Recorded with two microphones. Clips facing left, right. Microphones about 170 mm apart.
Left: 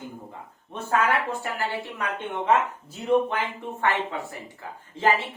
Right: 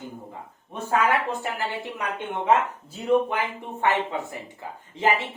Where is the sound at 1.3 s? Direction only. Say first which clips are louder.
Right 1 dB; 20° right (ahead or behind).